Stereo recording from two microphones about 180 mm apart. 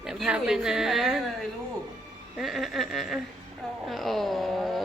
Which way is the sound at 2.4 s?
Centre (ahead or behind).